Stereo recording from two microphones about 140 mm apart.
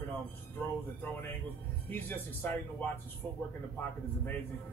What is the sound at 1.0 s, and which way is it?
Speech, 15° left (ahead or behind).